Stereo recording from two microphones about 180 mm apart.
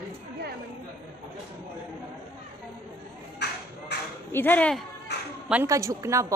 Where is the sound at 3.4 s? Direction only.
70° left (ahead or behind).